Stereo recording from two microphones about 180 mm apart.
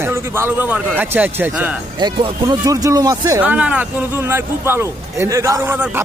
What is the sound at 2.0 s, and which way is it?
Speech, 20° right (ahead or behind).